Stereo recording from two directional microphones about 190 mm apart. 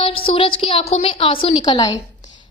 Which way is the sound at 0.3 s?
30° left (ahead or behind).